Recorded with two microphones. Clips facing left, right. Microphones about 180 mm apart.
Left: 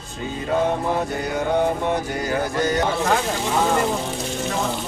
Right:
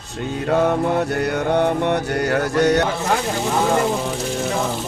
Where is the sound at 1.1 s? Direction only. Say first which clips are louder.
Right 3 dB; 70° right (ahead or behind).